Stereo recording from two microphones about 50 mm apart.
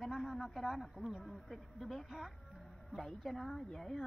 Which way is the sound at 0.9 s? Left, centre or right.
Centre.